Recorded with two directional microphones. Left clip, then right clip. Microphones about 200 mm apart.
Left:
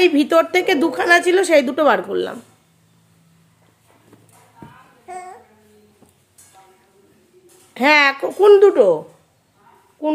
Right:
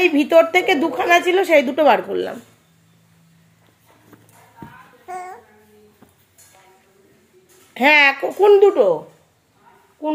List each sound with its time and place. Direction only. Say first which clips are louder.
0.0 s a woman's voice: right 1 dB; 10° left (ahead or behind)
5.1 s babbling: right 2 dB; 10° left (ahead or behind)
8.1 s a woman's voice: left 2 dB; 10° left (ahead or behind)
8.5 s speech: left 1 dB; 25° left (ahead or behind)
10.0 s child singing: left 2 dB; 25° left (ahead or behind)